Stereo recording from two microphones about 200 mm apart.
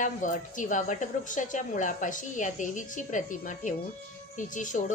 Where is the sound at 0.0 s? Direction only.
40° left (ahead or behind).